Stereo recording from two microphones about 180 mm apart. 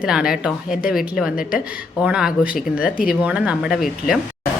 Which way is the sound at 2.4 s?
50° left (ahead or behind).